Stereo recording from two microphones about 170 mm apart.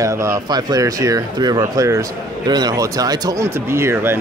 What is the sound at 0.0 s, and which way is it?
Speech, 20° right (ahead or behind).